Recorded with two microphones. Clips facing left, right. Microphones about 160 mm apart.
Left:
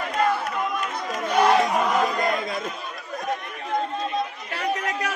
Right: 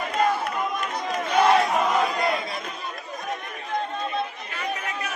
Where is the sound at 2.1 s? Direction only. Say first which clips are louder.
Left 1 dB; 45° left (ahead or behind).